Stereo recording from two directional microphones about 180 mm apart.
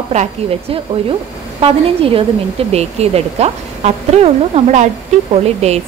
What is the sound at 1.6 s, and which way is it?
Speech, 30° right (ahead or behind).